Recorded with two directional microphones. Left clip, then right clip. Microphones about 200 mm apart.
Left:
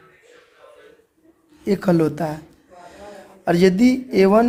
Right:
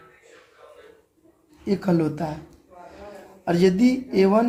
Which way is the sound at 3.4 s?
55° left (ahead or behind).